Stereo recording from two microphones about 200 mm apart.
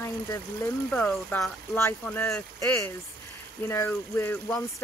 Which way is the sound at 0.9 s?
5° left (ahead or behind).